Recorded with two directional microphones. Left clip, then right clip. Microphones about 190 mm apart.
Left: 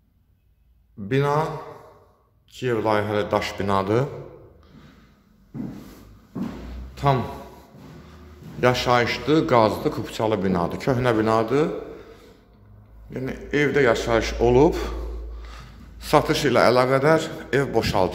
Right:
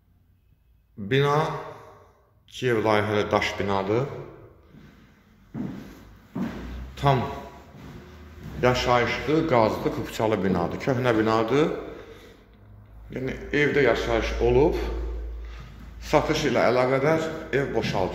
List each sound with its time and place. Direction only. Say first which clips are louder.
1.0 s a man's voice: even; 10° left (ahead or behind)
2.5 s speech: even; 5° left (ahead or behind)
3.6 s a man's voice: left 3 dB; 25° left (ahead or behind)
7.0 s a man's voice: left 1 dB; 5° left (ahead or behind)
8.5 s a man's voice: left 2 dB; 20° left (ahead or behind)
13.1 s a man's voice: left 1 dB; 15° left (ahead or behind); by 18.0 s 35° left (ahead or behind)